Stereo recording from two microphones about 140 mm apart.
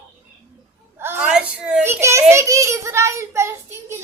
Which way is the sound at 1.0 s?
15° right (ahead or behind).